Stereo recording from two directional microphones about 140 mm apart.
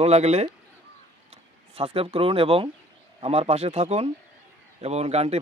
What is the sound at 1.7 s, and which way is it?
A man's voice, 45° right (ahead or behind).